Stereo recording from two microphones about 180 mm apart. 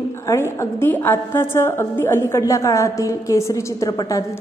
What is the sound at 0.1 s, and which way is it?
A woman's voice, 15° left (ahead or behind).